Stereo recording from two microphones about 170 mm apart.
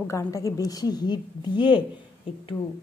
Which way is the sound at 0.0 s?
20° left (ahead or behind).